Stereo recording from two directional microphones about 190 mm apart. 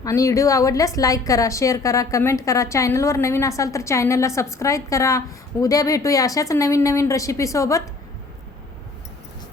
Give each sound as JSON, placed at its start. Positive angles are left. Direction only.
{"t": 0.0, "sound": "a woman's voice", "side_deg": 15}